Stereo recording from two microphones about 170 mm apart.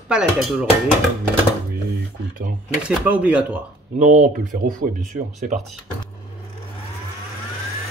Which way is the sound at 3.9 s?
45° right (ahead or behind).